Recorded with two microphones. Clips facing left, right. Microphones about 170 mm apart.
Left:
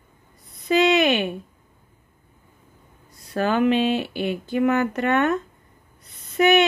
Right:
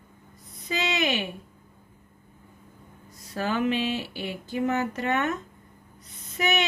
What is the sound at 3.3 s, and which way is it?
Speech, 65° left (ahead or behind).